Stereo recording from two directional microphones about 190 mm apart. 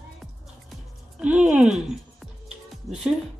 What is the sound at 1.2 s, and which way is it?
Speech, 5° right (ahead or behind).